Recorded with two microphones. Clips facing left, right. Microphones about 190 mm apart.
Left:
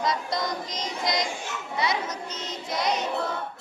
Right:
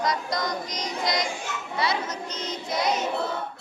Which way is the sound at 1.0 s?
20° left (ahead or behind).